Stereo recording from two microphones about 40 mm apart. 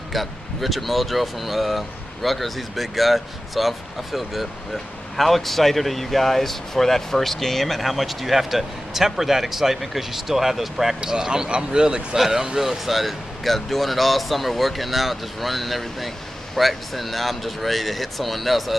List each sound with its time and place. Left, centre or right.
0.1 s speech: centre
11.1 s speech: centre